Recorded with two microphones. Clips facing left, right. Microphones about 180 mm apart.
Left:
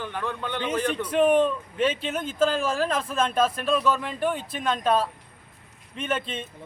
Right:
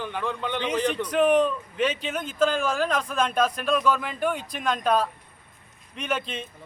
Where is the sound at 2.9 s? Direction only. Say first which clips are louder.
Even; centre (ahead or behind).